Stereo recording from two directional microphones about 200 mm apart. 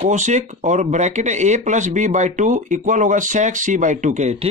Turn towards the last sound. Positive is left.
turn(degrees=-35)  # may be behind; listen again after turning